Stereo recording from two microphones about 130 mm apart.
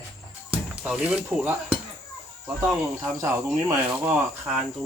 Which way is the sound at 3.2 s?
25° right (ahead or behind).